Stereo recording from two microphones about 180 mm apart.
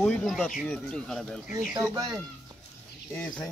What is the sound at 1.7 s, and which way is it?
Speech, 15° right (ahead or behind).